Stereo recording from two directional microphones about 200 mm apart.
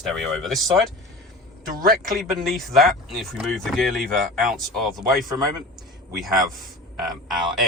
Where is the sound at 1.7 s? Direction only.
45° right (ahead or behind).